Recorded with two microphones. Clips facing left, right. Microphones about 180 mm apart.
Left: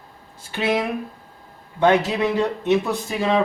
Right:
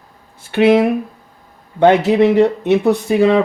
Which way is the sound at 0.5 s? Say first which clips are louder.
Right 11 dB; 65° right (ahead or behind).